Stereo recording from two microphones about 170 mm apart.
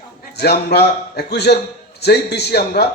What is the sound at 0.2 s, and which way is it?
A man's voice, 70° left (ahead or behind).